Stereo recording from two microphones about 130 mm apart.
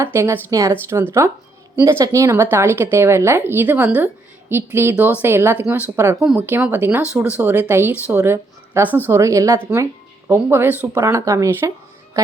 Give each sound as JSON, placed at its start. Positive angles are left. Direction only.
{"t": 0.0, "sound": "a woman's voice", "side_deg": -20}
{"t": 12.1, "sound": "music", "side_deg": -25}